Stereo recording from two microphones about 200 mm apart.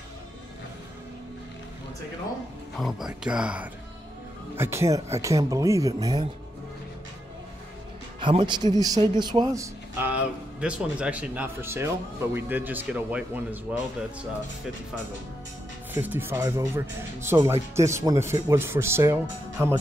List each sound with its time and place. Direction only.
2.8 s a man's voice: centre (ahead or behind); by 6.2 s 15° right (ahead or behind)
8.2 s a man's voice: 25° right (ahead or behind); by 13.6 s 10° right (ahead or behind)
15.9 s a man's voice: 10° right (ahead or behind)